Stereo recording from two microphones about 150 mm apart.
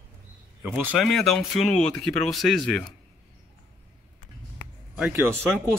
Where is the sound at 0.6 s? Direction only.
10° right (ahead or behind).